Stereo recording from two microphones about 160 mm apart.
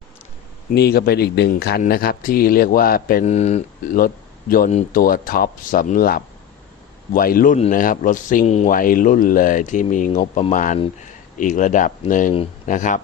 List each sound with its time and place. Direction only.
0.7 s speech: 90° left; by 3.2 s 65° left (ahead or behind)
3.2 s speech: 45° left (ahead or behind)
3.9 s a man's voice: 65° left (ahead or behind)